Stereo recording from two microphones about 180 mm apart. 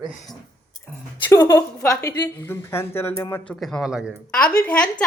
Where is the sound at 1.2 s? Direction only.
20° left (ahead or behind).